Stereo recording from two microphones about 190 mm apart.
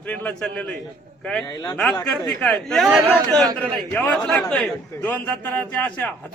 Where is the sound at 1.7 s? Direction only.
5° left (ahead or behind).